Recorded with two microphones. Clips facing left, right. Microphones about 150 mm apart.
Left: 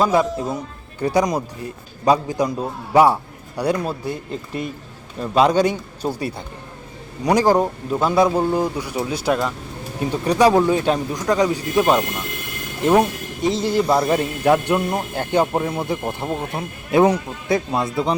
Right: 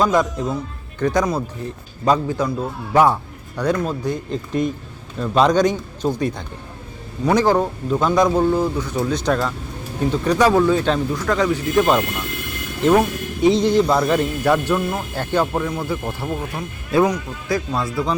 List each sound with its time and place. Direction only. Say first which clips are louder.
0.0 s a man's voice: even; 5° left (ahead or behind)
15.5 s speech: left 1 dB; 25° left (ahead or behind)